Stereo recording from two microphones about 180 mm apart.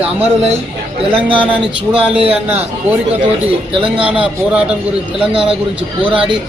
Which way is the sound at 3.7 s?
30° right (ahead or behind).